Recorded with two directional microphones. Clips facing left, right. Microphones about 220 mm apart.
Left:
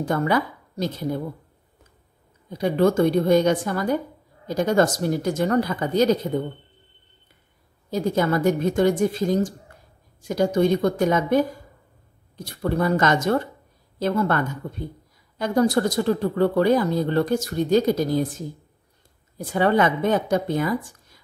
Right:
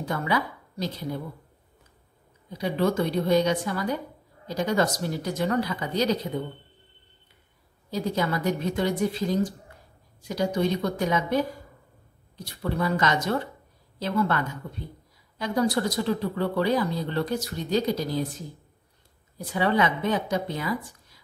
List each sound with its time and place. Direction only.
0.0 s speech: 50° left (ahead or behind)
2.5 s speech: 50° left (ahead or behind)
7.9 s speech: 50° left (ahead or behind)
12.4 s a woman's voice: 50° left (ahead or behind)
19.3 s speech: 50° left (ahead or behind)